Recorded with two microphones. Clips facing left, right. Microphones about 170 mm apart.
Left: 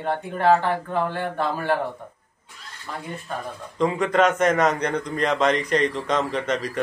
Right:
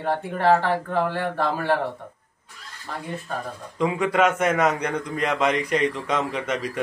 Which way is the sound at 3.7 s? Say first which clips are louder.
Left 1 dB; 5° right (ahead or behind).